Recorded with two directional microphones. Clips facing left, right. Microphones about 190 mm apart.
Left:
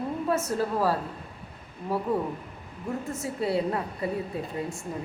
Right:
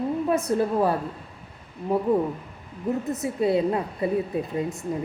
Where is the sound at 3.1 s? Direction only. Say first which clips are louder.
Right 5 dB; 20° right (ahead or behind).